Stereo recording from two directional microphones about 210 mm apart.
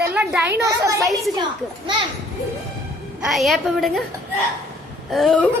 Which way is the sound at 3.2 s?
Centre (ahead or behind).